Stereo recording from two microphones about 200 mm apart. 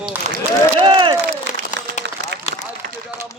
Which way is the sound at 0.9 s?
25° right (ahead or behind).